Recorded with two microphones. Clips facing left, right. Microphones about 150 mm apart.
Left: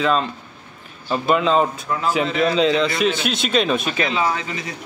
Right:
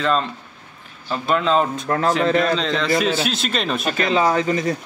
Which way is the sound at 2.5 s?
5° left (ahead or behind).